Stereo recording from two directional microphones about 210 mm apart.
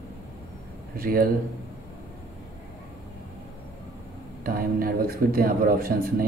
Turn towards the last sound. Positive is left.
turn(degrees=-45)  # may be behind; listen again after turning